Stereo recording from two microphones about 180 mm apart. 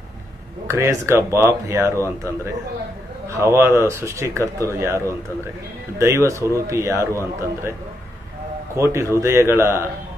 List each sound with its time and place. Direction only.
0.7 s speech: 15° right (ahead or behind)
8.7 s speech: 15° right (ahead or behind)